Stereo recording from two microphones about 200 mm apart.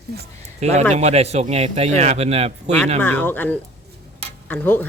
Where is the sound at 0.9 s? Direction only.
35° right (ahead or behind).